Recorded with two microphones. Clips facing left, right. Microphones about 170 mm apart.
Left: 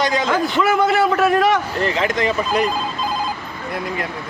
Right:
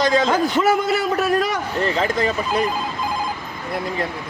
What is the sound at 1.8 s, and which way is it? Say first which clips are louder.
Speech: right 1 dB; 35° right (ahead or behind).